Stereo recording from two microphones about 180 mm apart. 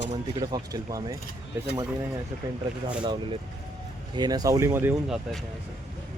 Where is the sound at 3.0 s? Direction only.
25° right (ahead or behind); by 5.4 s 5° right (ahead or behind).